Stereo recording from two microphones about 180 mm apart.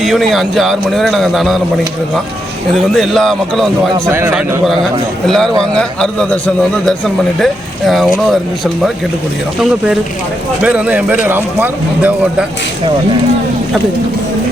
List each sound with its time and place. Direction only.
0.0 s a man's voice: centre (ahead or behind)
2.9 s a man's voice: centre (ahead or behind)
4.1 s a man's voice: 10° right (ahead or behind)
10.6 s speech: 5° right (ahead or behind)